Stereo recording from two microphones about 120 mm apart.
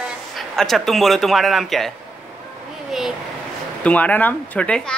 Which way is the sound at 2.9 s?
Centre (ahead or behind).